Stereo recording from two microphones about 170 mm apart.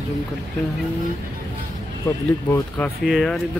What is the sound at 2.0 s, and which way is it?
Speech, 15° left (ahead or behind).